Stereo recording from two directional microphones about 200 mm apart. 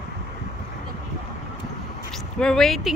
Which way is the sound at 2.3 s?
5° left (ahead or behind).